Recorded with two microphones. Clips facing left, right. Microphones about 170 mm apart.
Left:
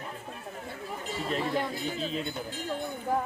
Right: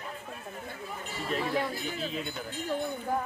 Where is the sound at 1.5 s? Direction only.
5° right (ahead or behind).